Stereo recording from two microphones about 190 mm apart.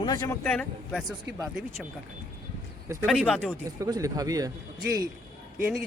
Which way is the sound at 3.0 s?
5° left (ahead or behind).